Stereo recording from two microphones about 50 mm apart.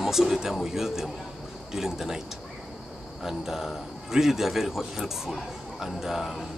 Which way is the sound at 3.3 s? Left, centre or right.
Centre.